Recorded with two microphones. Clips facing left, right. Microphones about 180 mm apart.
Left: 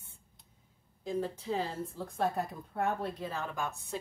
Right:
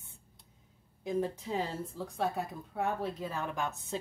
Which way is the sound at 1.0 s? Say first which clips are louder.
Right 1 dB; 15° right (ahead or behind).